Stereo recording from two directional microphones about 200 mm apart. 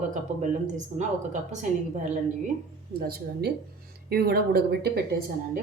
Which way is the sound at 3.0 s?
50° right (ahead or behind).